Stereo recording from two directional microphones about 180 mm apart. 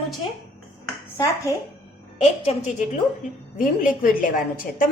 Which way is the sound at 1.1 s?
15° left (ahead or behind).